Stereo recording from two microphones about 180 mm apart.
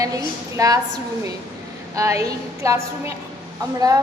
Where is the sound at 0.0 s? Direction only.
20° right (ahead or behind).